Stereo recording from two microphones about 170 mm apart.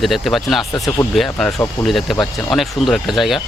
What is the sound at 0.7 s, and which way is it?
Speech, 20° left (ahead or behind).